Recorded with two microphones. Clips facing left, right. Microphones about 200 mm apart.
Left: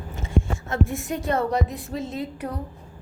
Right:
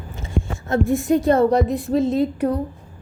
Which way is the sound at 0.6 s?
35° right (ahead or behind).